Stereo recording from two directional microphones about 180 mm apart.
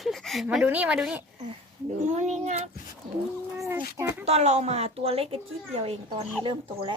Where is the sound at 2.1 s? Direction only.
40° right (ahead or behind).